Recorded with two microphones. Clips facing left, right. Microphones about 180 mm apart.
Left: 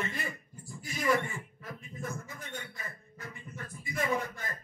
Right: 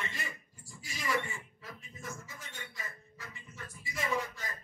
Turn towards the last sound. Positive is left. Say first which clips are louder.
# left 3 dB
turn(degrees=55)  # may be behind; listen again after turning